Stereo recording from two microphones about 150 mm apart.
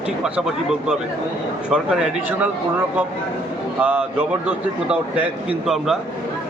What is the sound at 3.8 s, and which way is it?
A man's voice, 10° right (ahead or behind).